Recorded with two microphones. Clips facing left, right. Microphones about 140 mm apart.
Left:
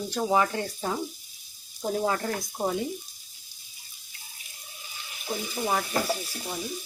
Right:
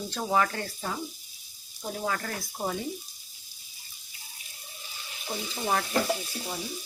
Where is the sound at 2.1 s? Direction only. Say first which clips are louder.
Left 4 dB; 25° left (ahead or behind).